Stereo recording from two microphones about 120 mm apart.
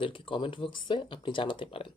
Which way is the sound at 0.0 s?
45° left (ahead or behind).